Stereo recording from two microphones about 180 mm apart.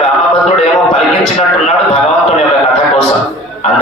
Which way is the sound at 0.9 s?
35° left (ahead or behind).